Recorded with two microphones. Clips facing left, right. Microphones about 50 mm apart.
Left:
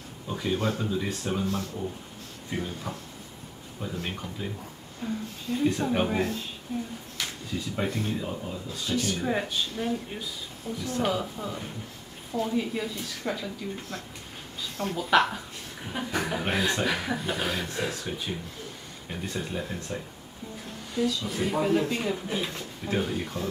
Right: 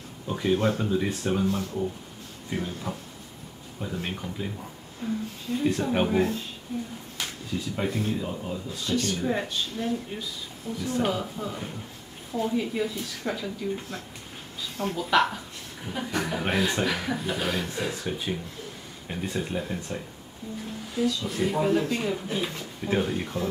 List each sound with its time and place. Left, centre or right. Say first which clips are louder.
0.3 s speech: right 4 dB; centre
7.7 s speech: right 1 dB; centre
17.9 s speech: right 3 dB; centre